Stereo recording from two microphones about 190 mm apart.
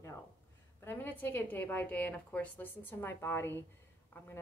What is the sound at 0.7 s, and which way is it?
A woman's voice, 10° left (ahead or behind).